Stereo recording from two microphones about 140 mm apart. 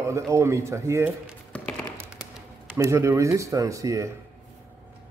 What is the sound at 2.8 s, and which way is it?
A man's voice, 20° right (ahead or behind).